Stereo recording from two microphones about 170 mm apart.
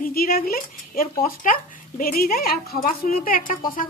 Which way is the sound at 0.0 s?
60° left (ahead or behind).